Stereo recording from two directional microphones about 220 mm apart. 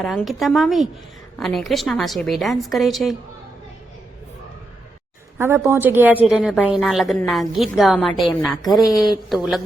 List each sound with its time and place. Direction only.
0.0 s a woman's voice: centre (ahead or behind)
5.4 s a woman's voice: 10° right (ahead or behind)